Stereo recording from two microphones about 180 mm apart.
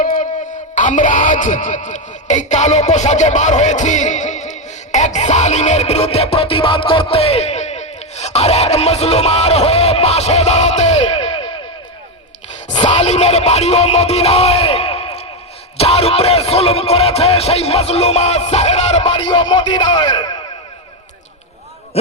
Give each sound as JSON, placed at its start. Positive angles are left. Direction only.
{"t": 0.0, "sound": "a sound", "side_deg": 50}
{"t": 0.8, "sound": "speech", "side_deg": 45}
{"t": 12.6, "sound": "music", "side_deg": 40}
{"t": 15.8, "sound": "speech", "side_deg": 35}